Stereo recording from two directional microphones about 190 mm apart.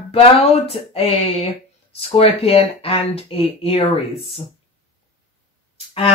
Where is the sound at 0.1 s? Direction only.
30° left (ahead or behind).